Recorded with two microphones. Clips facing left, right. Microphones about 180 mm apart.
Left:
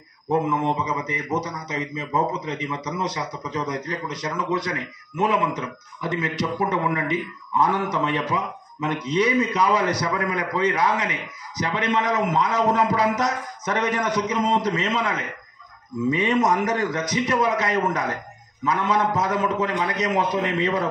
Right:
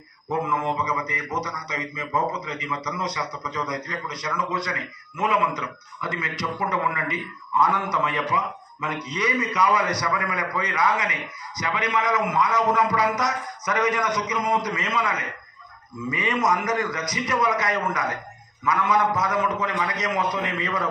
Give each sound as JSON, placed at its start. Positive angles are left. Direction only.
{"t": 0.3, "sound": "mantra", "side_deg": 30}